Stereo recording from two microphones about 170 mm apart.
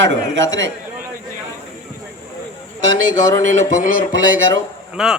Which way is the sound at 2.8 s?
90° right.